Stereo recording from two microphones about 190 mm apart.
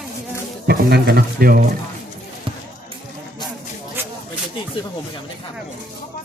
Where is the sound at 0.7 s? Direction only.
55° right (ahead or behind).